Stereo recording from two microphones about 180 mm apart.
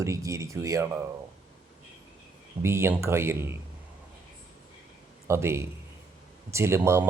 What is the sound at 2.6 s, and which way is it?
Speech, 15° right (ahead or behind).